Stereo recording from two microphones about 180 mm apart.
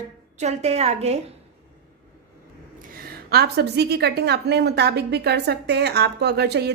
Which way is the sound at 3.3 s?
65° right (ahead or behind).